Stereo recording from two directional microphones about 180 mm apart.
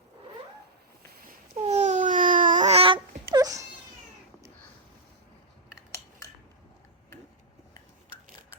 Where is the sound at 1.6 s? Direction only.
40° right (ahead or behind).